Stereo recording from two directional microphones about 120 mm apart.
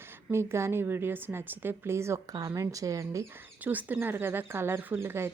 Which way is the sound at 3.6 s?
15° right (ahead or behind).